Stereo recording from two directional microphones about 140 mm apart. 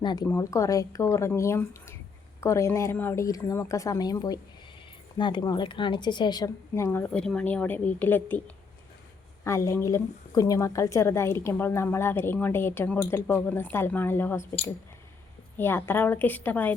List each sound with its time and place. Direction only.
0.0 s a woman's voice: 30° left (ahead or behind)
0.3 s a woman's voice: 20° left (ahead or behind)
7.1 s a woman's voice: 5° left (ahead or behind)
9.4 s a woman's voice: 20° left (ahead or behind)
15.5 s a woman's voice: 15° left (ahead or behind)